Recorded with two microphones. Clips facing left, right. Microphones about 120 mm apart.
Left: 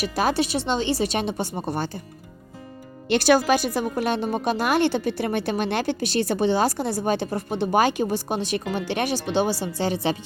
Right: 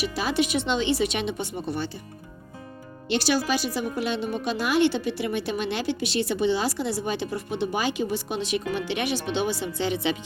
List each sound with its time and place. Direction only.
0.0 s a woman's voice: 45° left (ahead or behind)
3.1 s speech: 50° left (ahead or behind)